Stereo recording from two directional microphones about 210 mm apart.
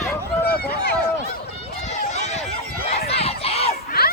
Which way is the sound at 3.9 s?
45° left (ahead or behind).